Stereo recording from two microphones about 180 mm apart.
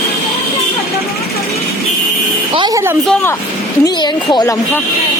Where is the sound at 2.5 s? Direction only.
25° right (ahead or behind).